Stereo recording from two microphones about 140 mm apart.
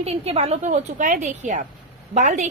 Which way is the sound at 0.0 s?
50° right (ahead or behind).